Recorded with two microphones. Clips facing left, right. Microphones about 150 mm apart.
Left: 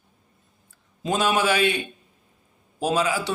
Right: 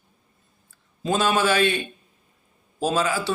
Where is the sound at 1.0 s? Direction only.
15° left (ahead or behind).